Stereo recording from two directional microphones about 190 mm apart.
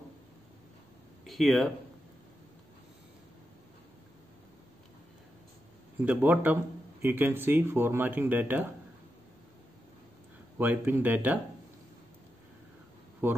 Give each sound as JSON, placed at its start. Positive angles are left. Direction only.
{"t": 1.2, "sound": "speech", "side_deg": 0}
{"t": 6.0, "sound": "a man's voice", "side_deg": -10}
{"t": 10.6, "sound": "a man's voice", "side_deg": -10}
{"t": 13.2, "sound": "a man's voice", "side_deg": -10}